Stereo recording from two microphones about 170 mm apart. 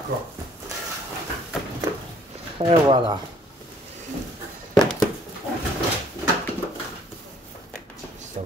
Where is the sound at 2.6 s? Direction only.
30° right (ahead or behind).